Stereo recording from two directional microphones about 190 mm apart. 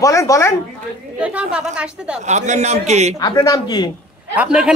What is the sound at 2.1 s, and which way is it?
A man's voice, 35° right (ahead or behind).